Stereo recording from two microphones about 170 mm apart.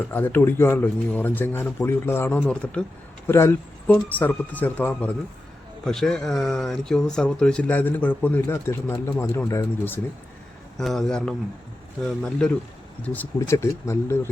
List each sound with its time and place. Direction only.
0.1 s speech: 10° left (ahead or behind)
10.8 s speech: centre (ahead or behind)